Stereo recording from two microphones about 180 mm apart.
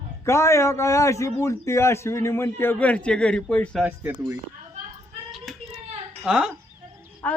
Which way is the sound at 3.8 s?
10° right (ahead or behind).